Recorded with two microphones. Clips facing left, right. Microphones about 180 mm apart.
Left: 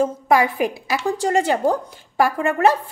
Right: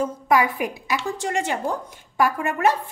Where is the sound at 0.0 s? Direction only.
25° left (ahead or behind).